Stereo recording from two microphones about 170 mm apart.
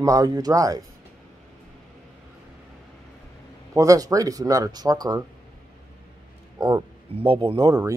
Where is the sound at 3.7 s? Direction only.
20° right (ahead or behind).